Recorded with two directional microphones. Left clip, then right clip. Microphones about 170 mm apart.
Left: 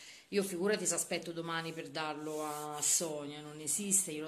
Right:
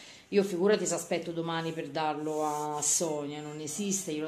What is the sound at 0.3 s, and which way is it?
Speech, 10° right (ahead or behind).